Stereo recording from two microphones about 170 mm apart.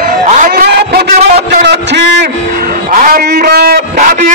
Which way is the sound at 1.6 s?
85° right.